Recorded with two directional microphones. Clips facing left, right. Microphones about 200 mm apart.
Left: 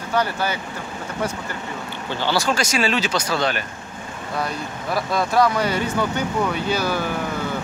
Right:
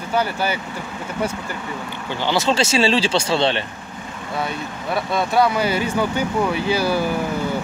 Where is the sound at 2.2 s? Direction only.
20° right (ahead or behind).